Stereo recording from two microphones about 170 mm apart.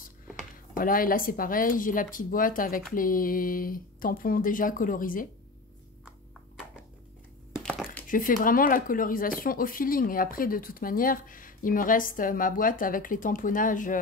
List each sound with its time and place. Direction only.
0.7 s speech: 55° left (ahead or behind)
7.5 s a sound: 5° left (ahead or behind)
8.1 s speech: 50° left (ahead or behind)